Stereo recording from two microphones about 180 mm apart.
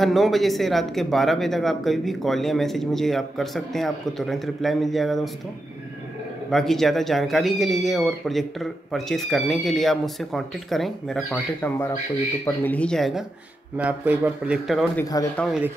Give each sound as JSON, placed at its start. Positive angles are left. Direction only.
{"t": 0.0, "sound": "speech", "side_deg": 0}
{"t": 6.5, "sound": "speech", "side_deg": 0}
{"t": 13.7, "sound": "a man's voice", "side_deg": -10}
{"t": 15.0, "sound": "speech", "side_deg": 20}
{"t": 15.3, "sound": "speech", "side_deg": 0}